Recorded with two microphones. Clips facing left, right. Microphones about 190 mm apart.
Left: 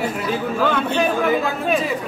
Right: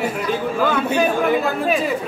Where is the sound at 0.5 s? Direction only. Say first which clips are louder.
Right 1 dB; 5° right (ahead or behind).